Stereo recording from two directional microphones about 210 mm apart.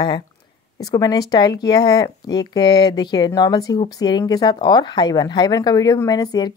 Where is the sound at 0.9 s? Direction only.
15° left (ahead or behind).